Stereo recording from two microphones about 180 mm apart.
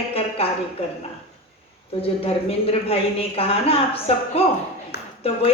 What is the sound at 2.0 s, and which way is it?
A woman's voice, 30° left (ahead or behind).